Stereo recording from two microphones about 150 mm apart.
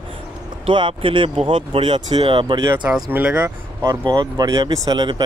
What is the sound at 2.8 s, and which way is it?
Speech, 10° right (ahead or behind).